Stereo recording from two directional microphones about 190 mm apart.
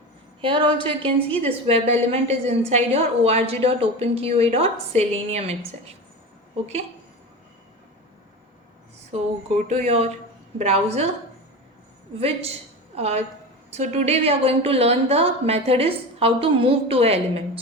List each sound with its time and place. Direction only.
0.8 s a woman's voice: 25° right (ahead or behind)
9.6 s a woman's voice: 35° right (ahead or behind)
12.2 s a woman's voice: 30° right (ahead or behind)